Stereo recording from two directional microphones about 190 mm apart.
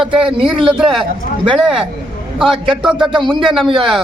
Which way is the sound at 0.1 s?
30° right (ahead or behind).